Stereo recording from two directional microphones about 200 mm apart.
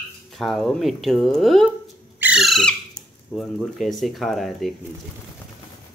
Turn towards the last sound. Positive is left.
turn(degrees=0)  # may be behind; listen again after turning